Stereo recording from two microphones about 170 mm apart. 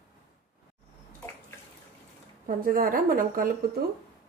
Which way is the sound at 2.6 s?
55° right (ahead or behind).